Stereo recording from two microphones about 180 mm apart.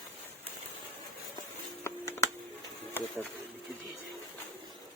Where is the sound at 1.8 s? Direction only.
15° left (ahead or behind).